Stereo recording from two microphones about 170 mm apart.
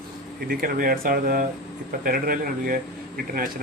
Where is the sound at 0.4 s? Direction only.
60° right (ahead or behind).